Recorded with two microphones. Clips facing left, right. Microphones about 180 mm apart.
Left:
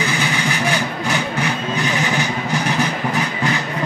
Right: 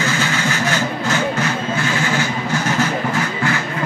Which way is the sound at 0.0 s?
15° left (ahead or behind).